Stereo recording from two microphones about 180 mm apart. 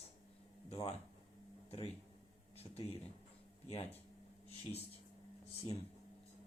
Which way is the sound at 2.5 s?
35° left (ahead or behind).